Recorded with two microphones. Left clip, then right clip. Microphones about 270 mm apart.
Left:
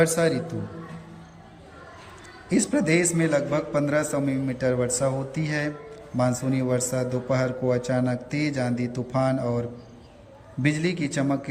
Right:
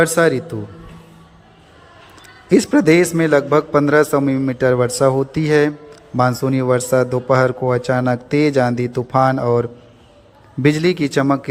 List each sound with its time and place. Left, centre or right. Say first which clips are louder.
0.0 s a man's voice: right 8 dB; centre
2.5 s a man's voice: right 10 dB; centre
10.6 s a man's voice: right 10 dB; centre